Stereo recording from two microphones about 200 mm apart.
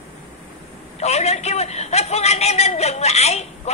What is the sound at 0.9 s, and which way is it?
A man's voice, 35° left (ahead or behind).